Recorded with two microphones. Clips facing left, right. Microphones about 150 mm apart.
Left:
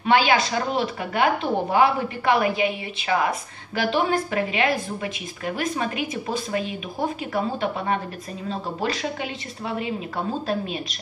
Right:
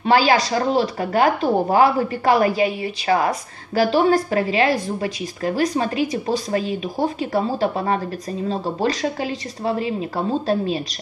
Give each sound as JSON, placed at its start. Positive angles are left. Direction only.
{"t": 0.0, "sound": "a woman's voice", "side_deg": -35}